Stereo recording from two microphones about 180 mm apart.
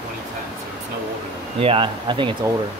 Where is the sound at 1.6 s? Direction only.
30° right (ahead or behind).